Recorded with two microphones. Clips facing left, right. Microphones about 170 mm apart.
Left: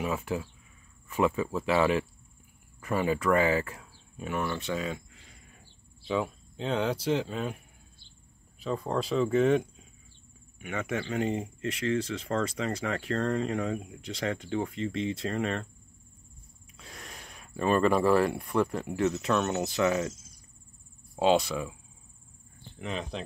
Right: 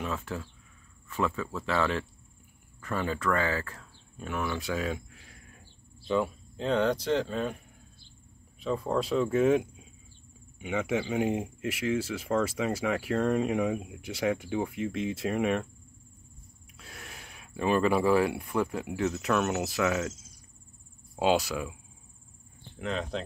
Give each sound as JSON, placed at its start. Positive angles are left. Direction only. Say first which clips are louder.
{"t": 0.0, "sound": "speech", "louder": "left 3 dB", "side_deg": 15}
{"t": 8.5, "sound": "speech", "louder": "right 2 dB", "side_deg": 0}
{"t": 16.7, "sound": "speech", "louder": "left 1 dB", "side_deg": -5}
{"t": 21.2, "sound": "speech", "louder": "left 2 dB", "side_deg": -5}
{"t": 22.8, "sound": "speech", "louder": "right 3 dB", "side_deg": 0}